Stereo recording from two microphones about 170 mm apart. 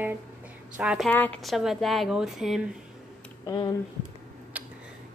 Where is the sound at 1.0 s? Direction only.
10° left (ahead or behind).